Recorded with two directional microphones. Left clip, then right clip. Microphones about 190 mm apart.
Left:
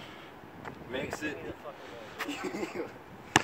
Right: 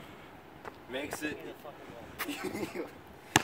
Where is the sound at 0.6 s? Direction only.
Centre (ahead or behind).